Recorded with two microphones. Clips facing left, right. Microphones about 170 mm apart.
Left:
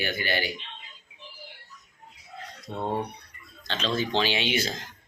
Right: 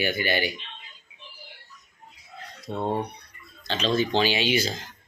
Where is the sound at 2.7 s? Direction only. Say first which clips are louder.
Right 4 dB; 30° right (ahead or behind).